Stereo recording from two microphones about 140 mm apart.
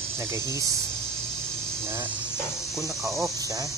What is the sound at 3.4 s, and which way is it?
Speech, 25° right (ahead or behind).